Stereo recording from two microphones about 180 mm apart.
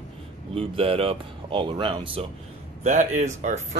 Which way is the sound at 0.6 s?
30° right (ahead or behind).